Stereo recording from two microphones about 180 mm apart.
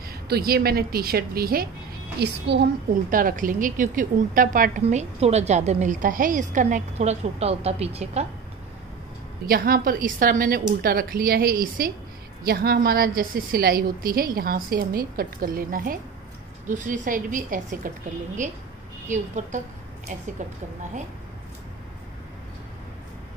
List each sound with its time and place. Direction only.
0.1 s a woman's voice: 60° right (ahead or behind)
2.1 s a woman's voice: 70° right (ahead or behind)
3.1 s a woman's voice: 50° right (ahead or behind)
4.8 s a woman's voice: 35° right (ahead or behind)
9.5 s a woman's voice: 55° right (ahead or behind)